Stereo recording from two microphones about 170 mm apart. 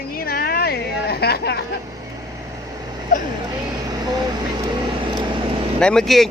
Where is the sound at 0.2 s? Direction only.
60° left (ahead or behind).